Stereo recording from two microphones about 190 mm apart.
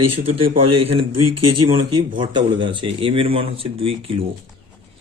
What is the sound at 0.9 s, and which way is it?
Speech, 25° right (ahead or behind).